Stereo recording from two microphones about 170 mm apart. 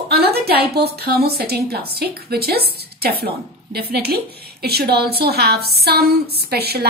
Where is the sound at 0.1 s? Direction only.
70° right (ahead or behind).